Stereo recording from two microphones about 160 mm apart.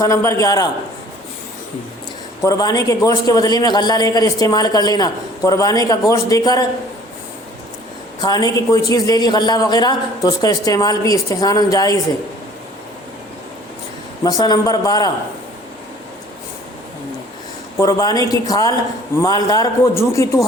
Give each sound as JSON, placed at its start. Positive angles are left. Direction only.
{"t": 0.0, "sound": "a man's voice", "side_deg": 15}
{"t": 2.4, "sound": "a man's voice", "side_deg": 20}
{"t": 8.2, "sound": "a man's voice", "side_deg": 25}
{"t": 14.3, "sound": "a man's voice", "side_deg": 25}
{"t": 17.7, "sound": "a man's voice", "side_deg": 20}